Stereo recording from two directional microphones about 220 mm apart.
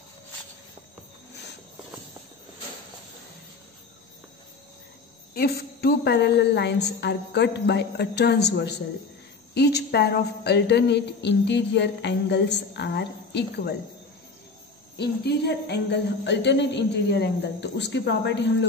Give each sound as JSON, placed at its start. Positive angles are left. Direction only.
{"t": 5.3, "sound": "a woman's voice", "side_deg": 45}
{"t": 15.0, "sound": "a woman's voice", "side_deg": 50}